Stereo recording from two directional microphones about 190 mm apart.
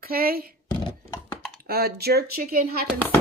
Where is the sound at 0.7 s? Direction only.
25° left (ahead or behind).